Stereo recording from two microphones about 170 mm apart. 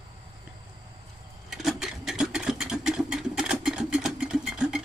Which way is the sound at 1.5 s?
Centre (ahead or behind).